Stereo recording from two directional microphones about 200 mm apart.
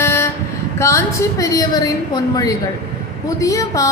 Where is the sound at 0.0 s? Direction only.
10° left (ahead or behind).